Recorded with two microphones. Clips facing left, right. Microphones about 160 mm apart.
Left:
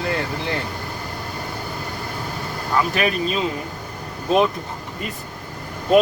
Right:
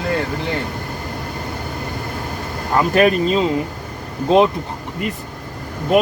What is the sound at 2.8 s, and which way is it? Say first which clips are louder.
Speech: right 7 dB; 45° right (ahead or behind).